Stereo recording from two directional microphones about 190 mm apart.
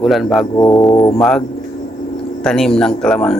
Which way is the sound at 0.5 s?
25° left (ahead or behind).